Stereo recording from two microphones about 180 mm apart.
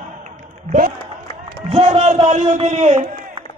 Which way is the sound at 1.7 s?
35° right (ahead or behind).